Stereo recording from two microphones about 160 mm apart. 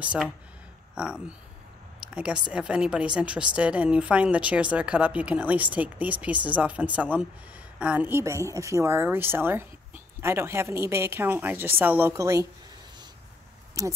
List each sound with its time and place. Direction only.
0.0 s speech: 10° right (ahead or behind)
2.0 s a sound: 5° right (ahead or behind)
2.5 s speech: 5° right (ahead or behind)
13.8 s speech: 20° right (ahead or behind)